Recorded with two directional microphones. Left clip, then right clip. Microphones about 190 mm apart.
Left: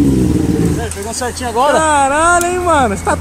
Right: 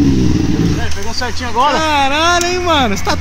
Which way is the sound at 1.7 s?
Centre (ahead or behind).